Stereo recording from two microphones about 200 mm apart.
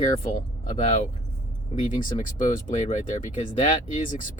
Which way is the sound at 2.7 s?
35° left (ahead or behind).